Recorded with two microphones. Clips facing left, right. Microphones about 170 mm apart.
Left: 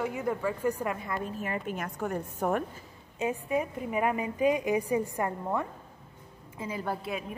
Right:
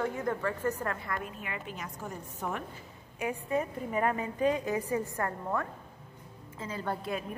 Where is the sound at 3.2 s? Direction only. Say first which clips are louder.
Left 2 dB; 20° left (ahead or behind).